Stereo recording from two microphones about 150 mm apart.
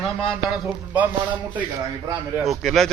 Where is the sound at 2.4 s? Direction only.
Centre (ahead or behind).